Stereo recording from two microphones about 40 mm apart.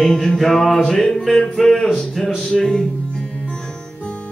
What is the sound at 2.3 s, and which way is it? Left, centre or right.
Music, left.